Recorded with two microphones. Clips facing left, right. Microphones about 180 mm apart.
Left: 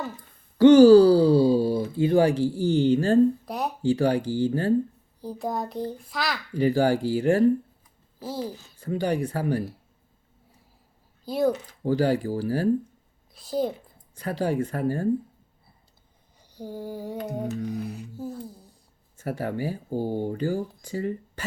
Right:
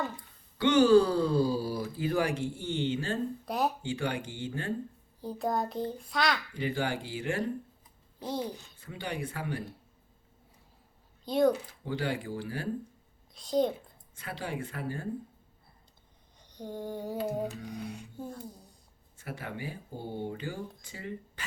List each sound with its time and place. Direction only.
0.6 s speech: 40° left (ahead or behind)
3.4 s speech: centre (ahead or behind)
3.8 s speech: 35° left (ahead or behind)
5.2 s a child's voice: centre (ahead or behind)
6.6 s speech: 40° left (ahead or behind)
8.2 s a child's voice: 5° left (ahead or behind)
8.8 s speech: 40° left (ahead or behind)
11.3 s a child's voice: 5° left (ahead or behind)
11.9 s speech: 40° left (ahead or behind)
13.3 s a child's voice: 5° left (ahead or behind)
14.2 s speech: 40° left (ahead or behind)
16.5 s a child's voice: 5° left (ahead or behind)
19.1 s speech: 40° left (ahead or behind)